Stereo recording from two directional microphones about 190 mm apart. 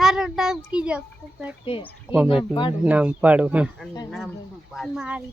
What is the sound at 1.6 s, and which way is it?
Speech, 25° left (ahead or behind).